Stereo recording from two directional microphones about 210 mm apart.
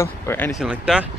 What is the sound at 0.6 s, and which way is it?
Speech, 5° right (ahead or behind).